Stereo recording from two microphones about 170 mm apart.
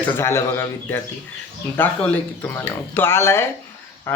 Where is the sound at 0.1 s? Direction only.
15° left (ahead or behind).